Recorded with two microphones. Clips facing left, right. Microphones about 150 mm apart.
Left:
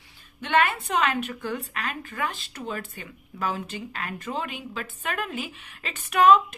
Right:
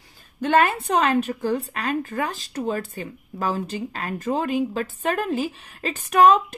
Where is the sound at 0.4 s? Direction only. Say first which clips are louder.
Right 4 dB; 40° right (ahead or behind).